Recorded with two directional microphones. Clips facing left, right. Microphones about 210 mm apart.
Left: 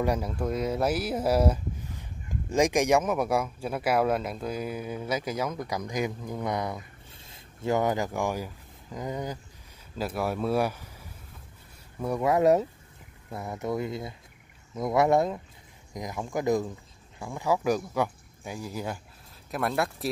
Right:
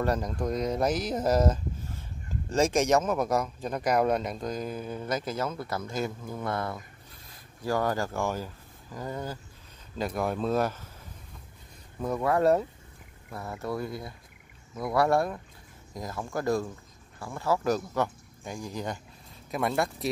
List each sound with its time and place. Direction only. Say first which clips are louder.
0.0 s speech: left 1 dB; 10° left (ahead or behind)
9.9 s speech: even; 5° left (ahead or behind)
12.0 s speech: left 2 dB; 10° left (ahead or behind)